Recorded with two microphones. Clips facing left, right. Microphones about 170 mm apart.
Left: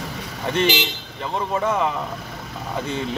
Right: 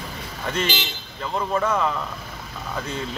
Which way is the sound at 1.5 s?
20° left (ahead or behind).